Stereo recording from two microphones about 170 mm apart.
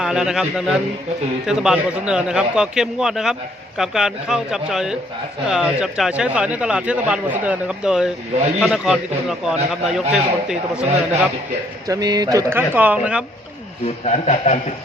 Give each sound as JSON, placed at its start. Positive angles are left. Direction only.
{"t": 0.0, "sound": "a man's voice", "side_deg": -5}
{"t": 11.9, "sound": "speech", "side_deg": -25}
{"t": 13.8, "sound": "a man's voice", "side_deg": 40}